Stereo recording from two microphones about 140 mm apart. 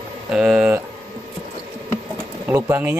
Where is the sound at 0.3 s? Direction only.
5° right (ahead or behind).